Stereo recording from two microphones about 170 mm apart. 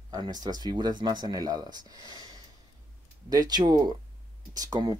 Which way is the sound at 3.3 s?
20° right (ahead or behind).